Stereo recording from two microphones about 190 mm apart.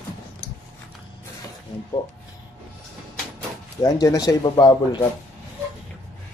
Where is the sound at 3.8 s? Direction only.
20° left (ahead or behind).